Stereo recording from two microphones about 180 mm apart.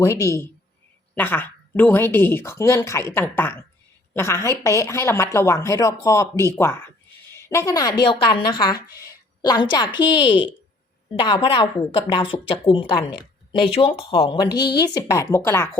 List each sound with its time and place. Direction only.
0.0 s a woman's voice: 15° left (ahead or behind)